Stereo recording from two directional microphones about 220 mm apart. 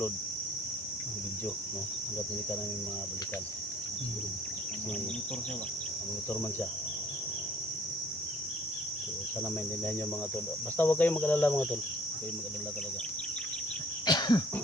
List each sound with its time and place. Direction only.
10.8 s speech: 10° left (ahead or behind)
14.0 s cough: 20° left (ahead or behind)